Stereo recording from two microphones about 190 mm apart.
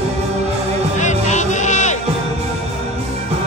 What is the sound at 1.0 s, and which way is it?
Music, 40° left (ahead or behind).